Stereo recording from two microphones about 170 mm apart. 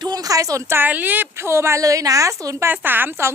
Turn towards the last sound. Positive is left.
turn(degrees=-15)  # may be behind; listen again after turning